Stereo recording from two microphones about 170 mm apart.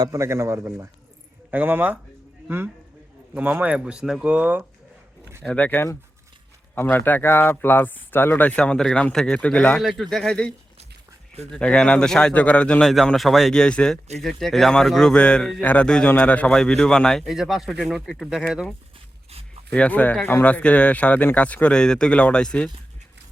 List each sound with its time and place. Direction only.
0.0 s speech: 20° right (ahead or behind)
3.3 s speech: 10° right (ahead or behind)
5.4 s speech: 10° left (ahead or behind)
11.5 s a man's voice: 5° left (ahead or behind)
19.7 s speech: 10° left (ahead or behind)